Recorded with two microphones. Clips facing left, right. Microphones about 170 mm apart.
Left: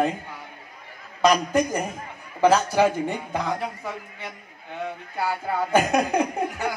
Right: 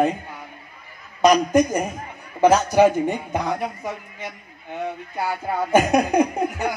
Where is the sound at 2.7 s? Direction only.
15° right (ahead or behind).